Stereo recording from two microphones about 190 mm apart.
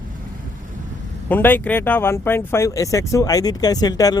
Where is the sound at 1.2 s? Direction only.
10° left (ahead or behind).